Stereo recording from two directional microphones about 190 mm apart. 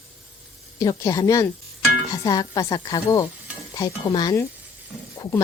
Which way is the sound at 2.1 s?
20° left (ahead or behind).